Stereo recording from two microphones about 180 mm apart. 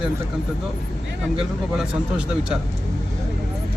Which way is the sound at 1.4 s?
5° right (ahead or behind).